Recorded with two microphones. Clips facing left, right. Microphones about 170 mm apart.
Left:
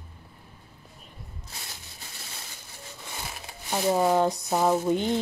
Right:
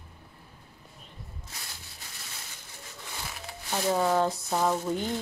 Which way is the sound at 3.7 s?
15° left (ahead or behind).